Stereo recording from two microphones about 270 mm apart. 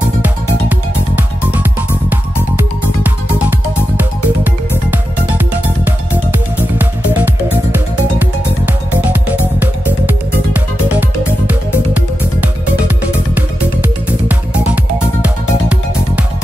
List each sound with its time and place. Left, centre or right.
0.2 s music: centre